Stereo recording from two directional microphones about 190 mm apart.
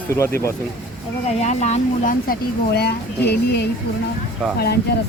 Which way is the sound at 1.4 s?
35° left (ahead or behind).